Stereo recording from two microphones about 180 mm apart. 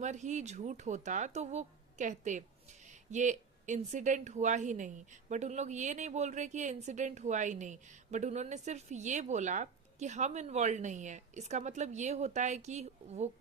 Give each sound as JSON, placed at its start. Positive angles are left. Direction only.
{"t": 0.0, "sound": "speech", "side_deg": -40}